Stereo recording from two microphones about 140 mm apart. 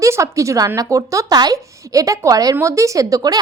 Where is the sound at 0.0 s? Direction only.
20° right (ahead or behind).